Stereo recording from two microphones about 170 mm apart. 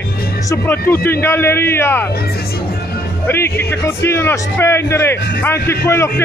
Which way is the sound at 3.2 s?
15° left (ahead or behind).